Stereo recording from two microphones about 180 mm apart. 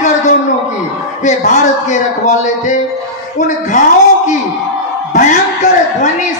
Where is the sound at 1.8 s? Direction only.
40° left (ahead or behind).